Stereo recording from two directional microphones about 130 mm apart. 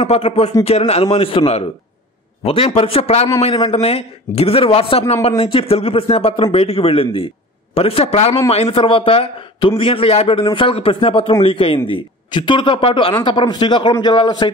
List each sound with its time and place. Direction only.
0.0 s a man's voice: 50° left (ahead or behind)